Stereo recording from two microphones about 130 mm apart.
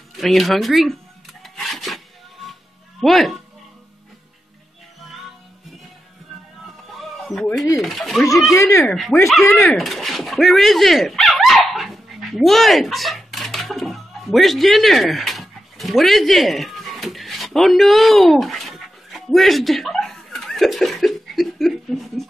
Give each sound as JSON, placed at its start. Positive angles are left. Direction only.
{"t": 0.1, "sound": "speech", "side_deg": 0}
{"t": 1.4, "sound": "filing", "side_deg": 0}
{"t": 3.0, "sound": "speech", "side_deg": 0}
{"t": 6.9, "sound": "a sound", "side_deg": 0}
{"t": 7.8, "sound": "speech", "side_deg": 0}
{"t": 8.5, "sound": "speech", "side_deg": 20}
{"t": 8.8, "sound": "speech", "side_deg": 5}
{"t": 9.4, "sound": "speech", "side_deg": 20}
{"t": 9.8, "sound": "dog", "side_deg": 0}